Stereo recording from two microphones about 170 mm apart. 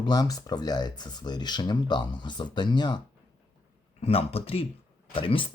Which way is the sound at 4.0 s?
35° left (ahead or behind).